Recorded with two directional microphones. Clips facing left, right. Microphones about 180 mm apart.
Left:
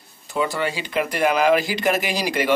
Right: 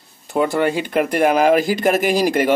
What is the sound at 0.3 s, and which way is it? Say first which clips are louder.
Speech: right 6 dB; 55° right (ahead or behind).